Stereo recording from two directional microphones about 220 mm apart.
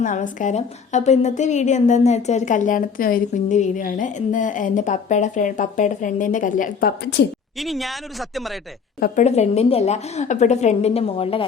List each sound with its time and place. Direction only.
0.0 s a woman's voice: 35° left (ahead or behind)
7.6 s speech: centre (ahead or behind)
9.0 s a woman's voice: 40° left (ahead or behind)